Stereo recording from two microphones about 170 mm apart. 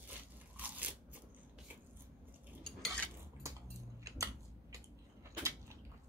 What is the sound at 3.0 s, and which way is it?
Cutlery, 15° right (ahead or behind).